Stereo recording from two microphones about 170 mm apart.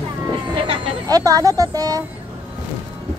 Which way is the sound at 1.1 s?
20° right (ahead or behind).